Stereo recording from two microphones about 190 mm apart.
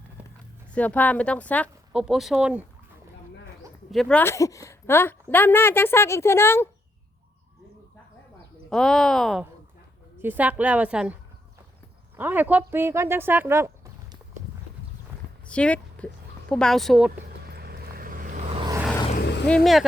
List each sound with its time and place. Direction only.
0.7 s a woman's voice: 10° left (ahead or behind)
1.9 s speech: 5° right (ahead or behind)
3.9 s speech: centre (ahead or behind)
4.2 s a woman's voice: 15° left (ahead or behind)
8.7 s speech: centre (ahead or behind)
15.4 s a sound: 5° left (ahead or behind)
16.5 s speech: 5° left (ahead or behind)
17.5 s vehicle: 55° right (ahead or behind); by 18.6 s 35° right (ahead or behind)
19.5 s speech: 5° left (ahead or behind)